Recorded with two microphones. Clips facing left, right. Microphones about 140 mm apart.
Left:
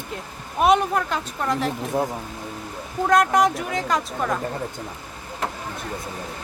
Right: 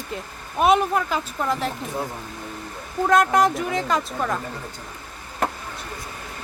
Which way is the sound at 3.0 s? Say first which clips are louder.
Even; centre (ahead or behind).